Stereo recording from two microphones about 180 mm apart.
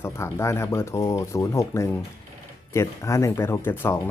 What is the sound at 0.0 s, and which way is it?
Speech, 15° left (ahead or behind).